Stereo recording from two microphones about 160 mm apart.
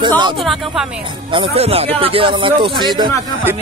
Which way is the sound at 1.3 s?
35° right (ahead or behind).